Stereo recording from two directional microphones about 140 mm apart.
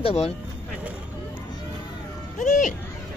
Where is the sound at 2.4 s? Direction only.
65° left (ahead or behind).